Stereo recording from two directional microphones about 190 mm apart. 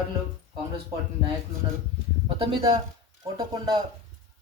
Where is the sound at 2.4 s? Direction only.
30° right (ahead or behind).